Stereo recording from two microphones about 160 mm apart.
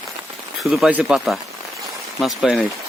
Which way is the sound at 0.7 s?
5° right (ahead or behind).